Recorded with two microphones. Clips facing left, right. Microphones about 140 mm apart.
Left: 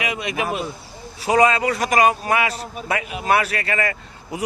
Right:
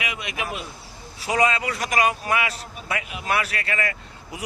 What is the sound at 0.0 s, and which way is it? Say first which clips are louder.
Speech: left 6 dB; 40° left (ahead or behind).